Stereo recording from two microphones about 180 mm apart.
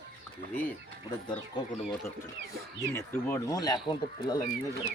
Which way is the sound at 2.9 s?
10° left (ahead or behind).